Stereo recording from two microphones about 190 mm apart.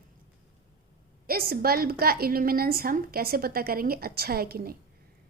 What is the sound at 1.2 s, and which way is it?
A woman's voice, 50° right (ahead or behind).